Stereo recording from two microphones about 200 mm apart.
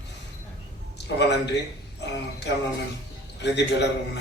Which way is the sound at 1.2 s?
60° left (ahead or behind).